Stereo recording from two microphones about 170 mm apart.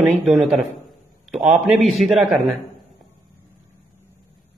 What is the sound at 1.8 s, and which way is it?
Speech, centre (ahead or behind).